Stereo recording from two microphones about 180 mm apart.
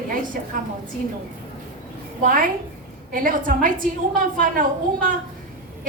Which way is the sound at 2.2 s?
50° right (ahead or behind).